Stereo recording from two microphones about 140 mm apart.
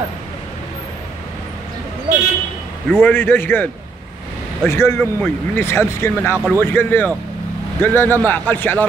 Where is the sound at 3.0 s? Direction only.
15° left (ahead or behind).